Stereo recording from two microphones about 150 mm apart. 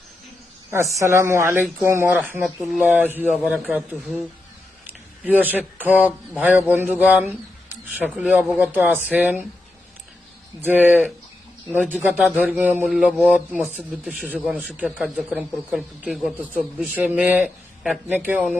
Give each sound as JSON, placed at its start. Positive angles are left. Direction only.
{"t": 0.7, "sound": "a woman's voice", "side_deg": -20}
{"t": 2.4, "sound": "speech", "side_deg": 0}
{"t": 2.9, "sound": "speech", "side_deg": -10}
{"t": 5.2, "sound": "speech", "side_deg": -10}
{"t": 10.6, "sound": "speech", "side_deg": -10}